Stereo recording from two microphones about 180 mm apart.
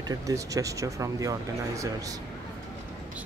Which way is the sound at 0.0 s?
20° right (ahead or behind).